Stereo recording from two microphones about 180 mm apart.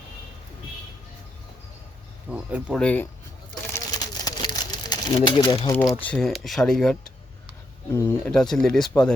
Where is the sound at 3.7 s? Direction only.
20° left (ahead or behind).